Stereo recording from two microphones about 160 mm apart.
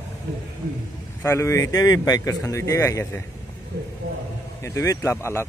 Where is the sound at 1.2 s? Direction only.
15° left (ahead or behind).